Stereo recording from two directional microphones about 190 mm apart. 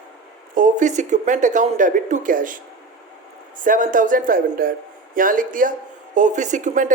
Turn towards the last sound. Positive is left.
turn(degrees=-40)  # may be behind; listen again after turning